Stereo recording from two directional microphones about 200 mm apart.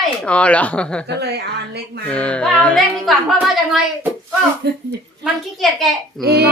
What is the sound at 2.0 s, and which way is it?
A woman's voice, 5° left (ahead or behind).